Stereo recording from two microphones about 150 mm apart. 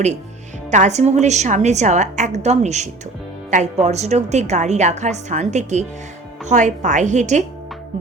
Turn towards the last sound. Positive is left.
turn(degrees=-55)  # may be behind; listen again after turning